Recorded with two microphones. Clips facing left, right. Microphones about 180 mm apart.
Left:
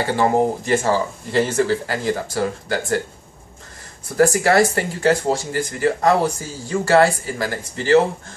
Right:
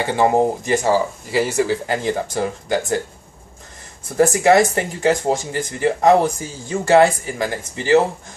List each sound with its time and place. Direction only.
0.0 s speech: 15° right (ahead or behind)
4.2 s speech: 20° right (ahead or behind)